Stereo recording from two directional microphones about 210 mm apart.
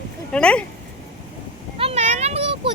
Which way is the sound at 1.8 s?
30° right (ahead or behind).